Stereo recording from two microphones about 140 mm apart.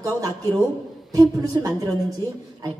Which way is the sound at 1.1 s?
25° right (ahead or behind).